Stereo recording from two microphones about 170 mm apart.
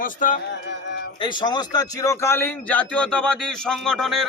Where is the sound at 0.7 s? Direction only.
90° left.